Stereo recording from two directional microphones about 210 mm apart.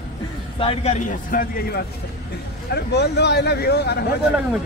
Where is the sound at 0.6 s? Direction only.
30° left (ahead or behind).